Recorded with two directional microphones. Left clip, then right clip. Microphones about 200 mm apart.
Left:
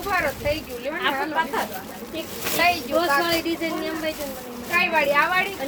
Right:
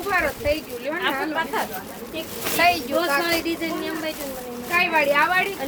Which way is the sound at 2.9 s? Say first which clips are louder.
Left 1 dB; 25° right (ahead or behind).